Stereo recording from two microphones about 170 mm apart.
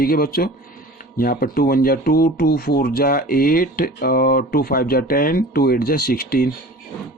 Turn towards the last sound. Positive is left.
turn(degrees=60)  # may be behind; listen again after turning